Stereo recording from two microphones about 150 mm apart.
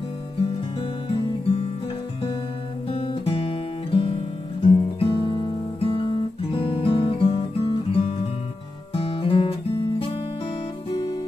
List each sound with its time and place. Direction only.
0.4 s music: 35° left (ahead or behind)
2.9 s music: 40° left (ahead or behind)
5.8 s guitar: 35° left (ahead or behind)